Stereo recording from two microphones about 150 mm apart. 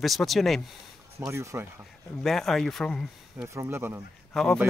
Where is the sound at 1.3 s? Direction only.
15° right (ahead or behind).